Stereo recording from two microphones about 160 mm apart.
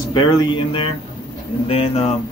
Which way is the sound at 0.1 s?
25° left (ahead or behind).